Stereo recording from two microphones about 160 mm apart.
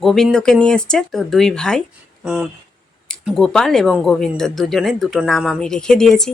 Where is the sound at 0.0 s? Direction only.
Centre (ahead or behind).